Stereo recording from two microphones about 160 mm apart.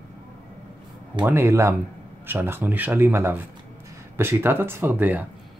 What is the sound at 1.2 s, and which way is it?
Speech, 15° right (ahead or behind).